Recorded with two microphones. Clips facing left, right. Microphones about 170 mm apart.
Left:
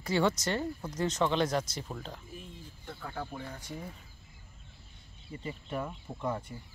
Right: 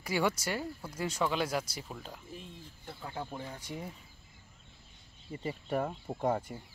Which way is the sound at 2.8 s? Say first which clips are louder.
Left 1 dB; 25° right (ahead or behind).